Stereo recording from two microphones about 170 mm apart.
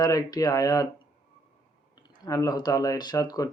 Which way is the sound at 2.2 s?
20° left (ahead or behind).